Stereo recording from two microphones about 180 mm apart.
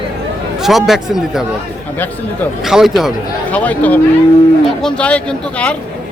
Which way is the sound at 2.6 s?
Centre (ahead or behind).